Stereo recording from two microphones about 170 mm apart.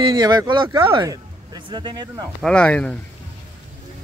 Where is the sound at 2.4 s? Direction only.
5° left (ahead or behind).